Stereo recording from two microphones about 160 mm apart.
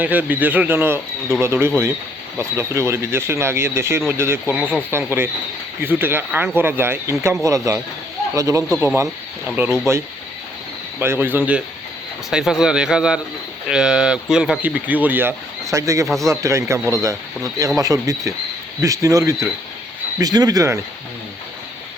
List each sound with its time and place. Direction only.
0.0 s a man's voice: 10° right (ahead or behind)
11.0 s a man's voice: 15° right (ahead or behind)